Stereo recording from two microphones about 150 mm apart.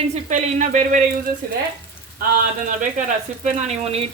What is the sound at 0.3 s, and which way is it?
Speech, 55° right (ahead or behind).